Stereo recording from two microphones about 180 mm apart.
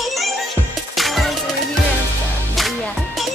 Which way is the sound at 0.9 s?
Centre (ahead or behind).